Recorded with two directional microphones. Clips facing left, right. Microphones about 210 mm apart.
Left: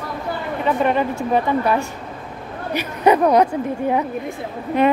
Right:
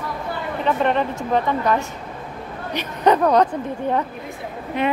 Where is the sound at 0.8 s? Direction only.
10° left (ahead or behind).